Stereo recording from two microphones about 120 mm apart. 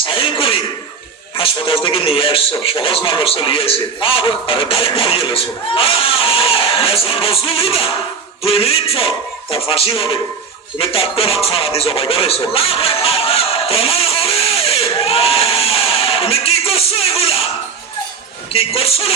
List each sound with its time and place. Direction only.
0.0 s throat clearing: 45° left (ahead or behind)
1.4 s a man's voice: 45° left (ahead or behind)
10.8 s music: 50° left (ahead or behind)
18.5 s a man's voice: 55° left (ahead or behind)